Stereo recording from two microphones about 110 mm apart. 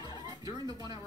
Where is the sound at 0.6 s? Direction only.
40° left (ahead or behind).